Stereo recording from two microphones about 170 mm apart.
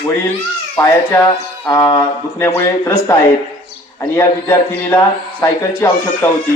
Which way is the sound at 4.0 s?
15° left (ahead or behind).